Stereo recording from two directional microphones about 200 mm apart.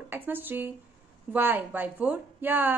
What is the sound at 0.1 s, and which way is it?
A woman's voice, 10° right (ahead or behind).